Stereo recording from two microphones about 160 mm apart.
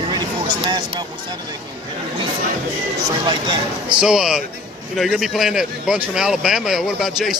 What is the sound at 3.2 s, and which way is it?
Speech, 30° right (ahead or behind).